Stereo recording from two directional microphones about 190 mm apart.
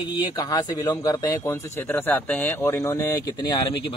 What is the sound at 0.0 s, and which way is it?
A man's voice, 20° left (ahead or behind).